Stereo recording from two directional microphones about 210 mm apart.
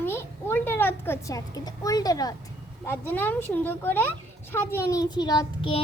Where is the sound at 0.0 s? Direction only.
10° left (ahead or behind).